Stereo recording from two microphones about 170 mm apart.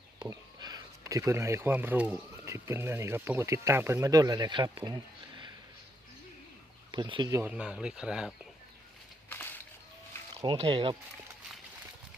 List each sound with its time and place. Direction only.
0.2 s speech: 25° right (ahead or behind)
6.9 s speech: 25° right (ahead or behind)
7.5 s speech: 5° right (ahead or behind)
10.4 s speech: 30° right (ahead or behind)